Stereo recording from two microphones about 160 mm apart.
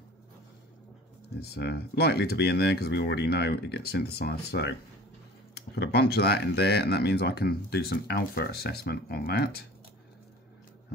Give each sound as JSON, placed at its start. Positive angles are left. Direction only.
{"t": 1.4, "sound": "speech", "side_deg": 85}